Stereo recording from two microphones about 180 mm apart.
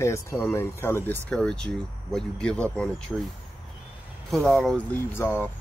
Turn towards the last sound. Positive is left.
turn(degrees=10)  # may be behind; listen again after turning